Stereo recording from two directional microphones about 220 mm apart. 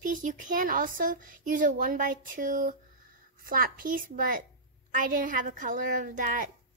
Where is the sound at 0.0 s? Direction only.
35° right (ahead or behind).